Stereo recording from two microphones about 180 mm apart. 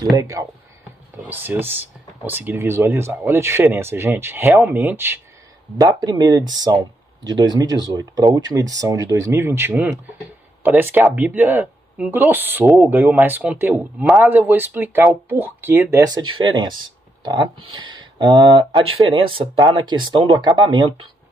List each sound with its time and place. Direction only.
0.2 s speech: 15° right (ahead or behind)